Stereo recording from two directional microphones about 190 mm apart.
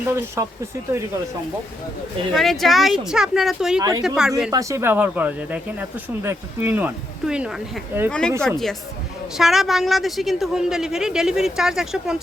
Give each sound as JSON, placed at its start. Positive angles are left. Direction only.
{"t": 0.1, "sound": "speech", "side_deg": -15}
{"t": 2.3, "sound": "a woman's voice", "side_deg": 0}
{"t": 3.8, "sound": "speech", "side_deg": -20}
{"t": 4.0, "sound": "a woman's voice", "side_deg": -5}
{"t": 4.5, "sound": "speech", "side_deg": -15}
{"t": 8.4, "sound": "a woman's voice", "side_deg": 0}